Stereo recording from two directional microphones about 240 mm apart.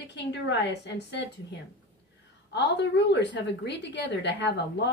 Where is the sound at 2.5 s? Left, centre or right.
Left.